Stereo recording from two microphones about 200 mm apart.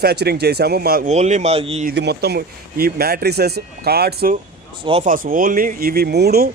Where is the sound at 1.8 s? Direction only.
55° right (ahead or behind).